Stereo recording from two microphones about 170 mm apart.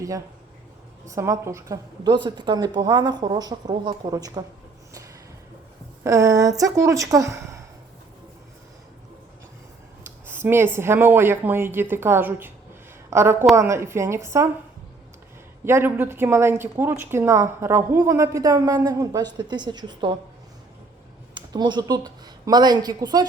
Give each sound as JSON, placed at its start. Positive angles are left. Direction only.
{"t": 1.0, "sound": "speech", "side_deg": -20}
{"t": 6.0, "sound": "speech", "side_deg": -20}
{"t": 10.2, "sound": "a woman's voice", "side_deg": -15}
{"t": 15.6, "sound": "speech", "side_deg": -15}
{"t": 21.3, "sound": "speech", "side_deg": -25}